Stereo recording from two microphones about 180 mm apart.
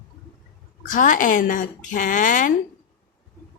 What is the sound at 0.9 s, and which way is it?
A woman's voice, 45° left (ahead or behind).